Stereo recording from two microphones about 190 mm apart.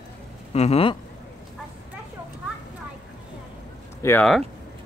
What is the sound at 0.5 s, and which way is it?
Speech, 35° left (ahead or behind).